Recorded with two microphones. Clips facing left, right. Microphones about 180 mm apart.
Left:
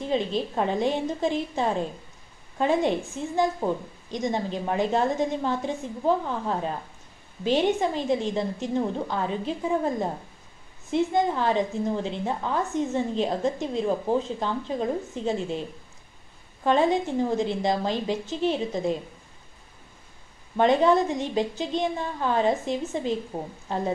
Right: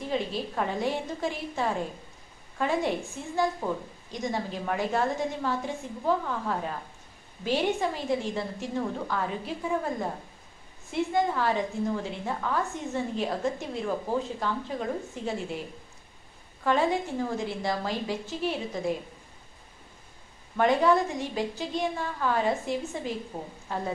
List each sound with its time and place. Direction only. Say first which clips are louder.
0.0 s a woman's voice: left 4 dB; 20° left (ahead or behind)
16.6 s a woman's voice: left 4 dB; 20° left (ahead or behind)
20.5 s a woman's voice: left 3 dB; 20° left (ahead or behind)